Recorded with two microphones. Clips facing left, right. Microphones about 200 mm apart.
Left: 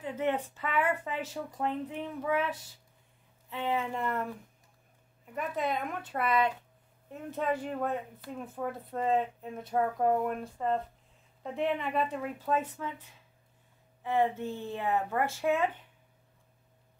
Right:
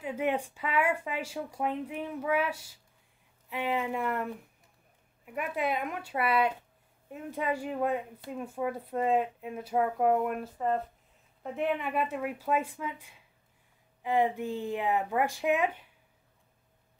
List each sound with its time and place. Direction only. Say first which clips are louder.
0.0 s speech: right 1 dB; 10° right (ahead or behind)